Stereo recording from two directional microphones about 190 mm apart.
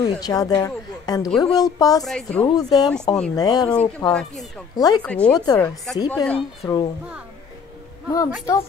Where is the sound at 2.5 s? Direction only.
20° left (ahead or behind).